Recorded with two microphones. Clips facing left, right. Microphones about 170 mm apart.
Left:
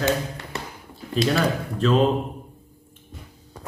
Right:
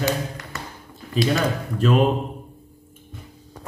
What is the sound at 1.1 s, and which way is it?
Speech, centre (ahead or behind).